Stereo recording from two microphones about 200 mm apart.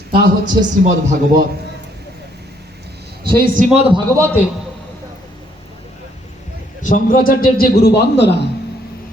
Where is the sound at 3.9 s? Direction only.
15° right (ahead or behind).